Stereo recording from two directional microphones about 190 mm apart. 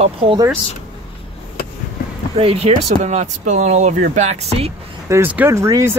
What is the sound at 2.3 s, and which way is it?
Speech, 30° right (ahead or behind).